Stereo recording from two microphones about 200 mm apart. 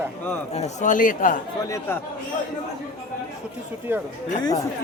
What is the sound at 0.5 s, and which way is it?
Speech, 35° left (ahead or behind).